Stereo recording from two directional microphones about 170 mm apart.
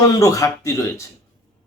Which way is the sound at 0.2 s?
20° left (ahead or behind).